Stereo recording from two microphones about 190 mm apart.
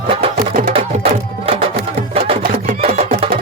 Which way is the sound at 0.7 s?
30° right (ahead or behind).